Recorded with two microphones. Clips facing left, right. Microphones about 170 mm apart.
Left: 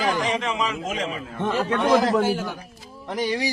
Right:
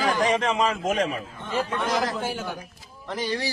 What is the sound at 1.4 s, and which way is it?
Speech, 80° left.